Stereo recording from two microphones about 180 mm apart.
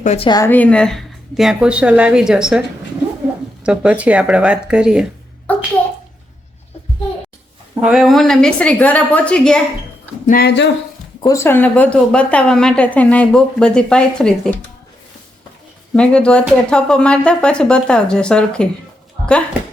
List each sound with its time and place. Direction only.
0.0 s a woman's voice: 40° left (ahead or behind)
0.3 s a woman's voice: 20° left (ahead or behind)
0.5 s speech: 5° left (ahead or behind)
5.5 s a sound: 10° left (ahead or behind)
7.8 s speech: 5° right (ahead or behind)
10.2 s speech: 60° left (ahead or behind)
11.2 s a woman's voice: 15° left (ahead or behind)
16.0 s speech: 5° left (ahead or behind)